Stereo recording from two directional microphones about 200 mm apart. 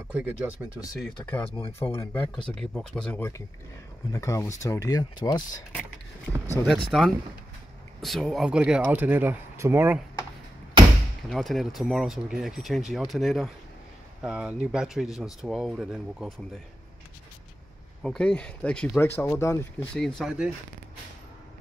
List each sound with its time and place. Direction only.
0.1 s speech: 5° right (ahead or behind)
0.9 s speech: 5° left (ahead or behind)
6.6 s speech: centre (ahead or behind)
11.2 s speech: centre (ahead or behind)
18.0 s speech: 5° left (ahead or behind)
20.0 s speech: centre (ahead or behind)